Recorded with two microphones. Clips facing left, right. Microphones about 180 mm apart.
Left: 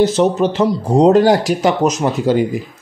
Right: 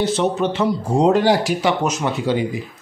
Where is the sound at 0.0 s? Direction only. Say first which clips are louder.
Left 6 dB; 40° left (ahead or behind).